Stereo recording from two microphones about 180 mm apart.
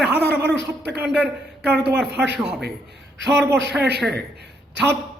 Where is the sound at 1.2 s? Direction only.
65° right (ahead or behind).